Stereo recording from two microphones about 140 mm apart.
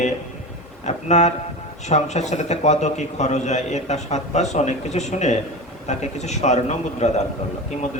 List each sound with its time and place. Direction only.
0.9 s a man's voice: 55° left (ahead or behind)